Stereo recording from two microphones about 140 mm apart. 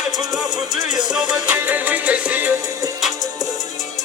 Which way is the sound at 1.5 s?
10° right (ahead or behind).